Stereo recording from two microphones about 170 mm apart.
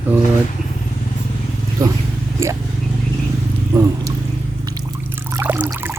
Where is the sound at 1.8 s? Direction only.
20° right (ahead or behind).